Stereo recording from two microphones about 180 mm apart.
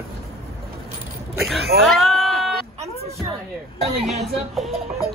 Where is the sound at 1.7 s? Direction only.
Centre (ahead or behind).